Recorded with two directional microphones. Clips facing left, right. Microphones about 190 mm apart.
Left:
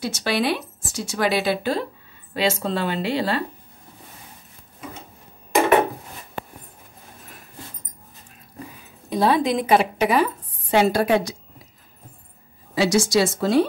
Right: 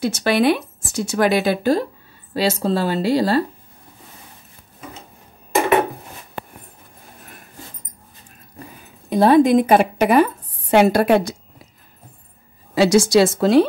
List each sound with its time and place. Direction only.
0.0 s a woman's voice: 55° right (ahead or behind); by 3.4 s 40° right (ahead or behind)
9.1 s a woman's voice: 50° right (ahead or behind)
12.7 s a woman's voice: 65° right (ahead or behind)